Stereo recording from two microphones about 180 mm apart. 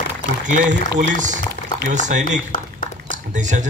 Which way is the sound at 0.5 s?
45° right (ahead or behind).